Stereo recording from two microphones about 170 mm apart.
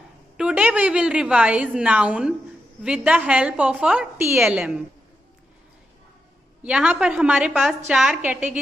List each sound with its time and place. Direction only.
0.4 s a woman's voice: 5° right (ahead or behind)
6.6 s a woman's voice: 5° right (ahead or behind)